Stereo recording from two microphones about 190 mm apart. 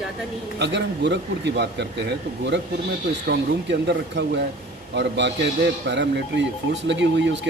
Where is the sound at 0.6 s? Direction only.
65° right (ahead or behind).